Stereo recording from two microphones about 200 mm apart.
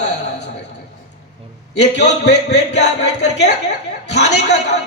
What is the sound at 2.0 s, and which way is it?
Music, 60° left (ahead or behind).